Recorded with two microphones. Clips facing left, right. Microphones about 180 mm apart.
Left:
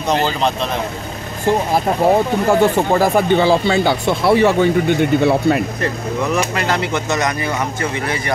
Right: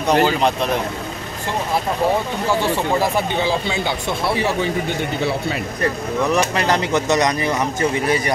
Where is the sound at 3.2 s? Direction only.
55° left (ahead or behind).